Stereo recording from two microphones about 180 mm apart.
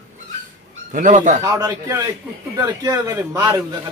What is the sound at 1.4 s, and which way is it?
Speech, 20° right (ahead or behind).